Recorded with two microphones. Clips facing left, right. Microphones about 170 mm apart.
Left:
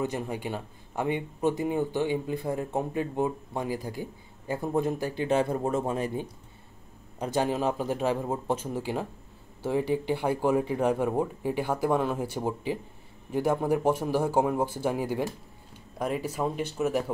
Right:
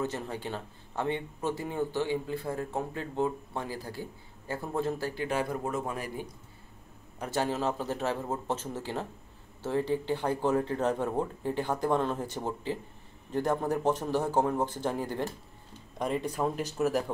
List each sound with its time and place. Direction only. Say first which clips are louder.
0.0 s a man's voice: left 3 dB; 15° left (ahead or behind)